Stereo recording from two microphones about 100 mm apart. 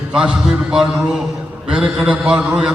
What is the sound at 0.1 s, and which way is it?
A man's voice, 10° right (ahead or behind).